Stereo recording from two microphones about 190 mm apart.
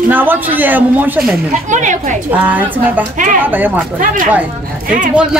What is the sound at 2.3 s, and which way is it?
Speech, 10° right (ahead or behind).